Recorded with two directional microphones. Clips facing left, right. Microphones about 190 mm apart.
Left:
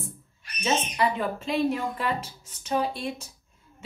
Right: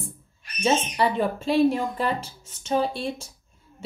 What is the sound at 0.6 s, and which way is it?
A woman's voice, 30° right (ahead or behind).